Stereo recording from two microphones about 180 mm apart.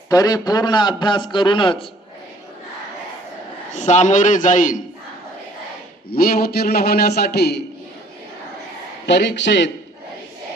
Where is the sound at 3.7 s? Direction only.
40° left (ahead or behind).